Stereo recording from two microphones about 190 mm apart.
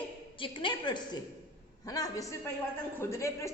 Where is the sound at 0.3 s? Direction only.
25° left (ahead or behind).